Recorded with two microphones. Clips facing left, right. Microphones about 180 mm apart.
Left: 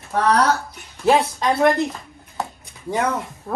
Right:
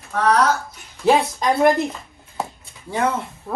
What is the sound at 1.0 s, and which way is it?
Speech, centre (ahead or behind).